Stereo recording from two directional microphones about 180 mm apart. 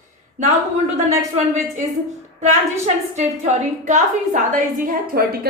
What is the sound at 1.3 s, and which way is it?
Speech, 40° right (ahead or behind).